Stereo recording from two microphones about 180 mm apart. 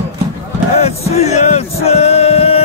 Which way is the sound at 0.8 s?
35° left (ahead or behind).